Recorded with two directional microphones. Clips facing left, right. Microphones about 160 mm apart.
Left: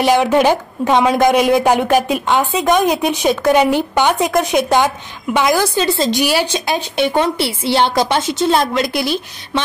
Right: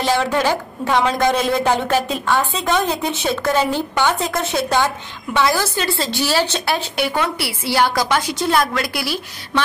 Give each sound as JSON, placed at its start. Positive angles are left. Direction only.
{"t": 0.0, "sound": "a woman's voice", "side_deg": 15}